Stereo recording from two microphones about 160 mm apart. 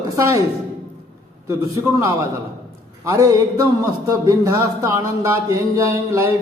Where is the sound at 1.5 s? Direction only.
20° right (ahead or behind).